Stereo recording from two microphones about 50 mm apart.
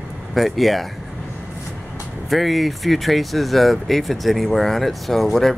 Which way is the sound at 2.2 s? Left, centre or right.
Centre.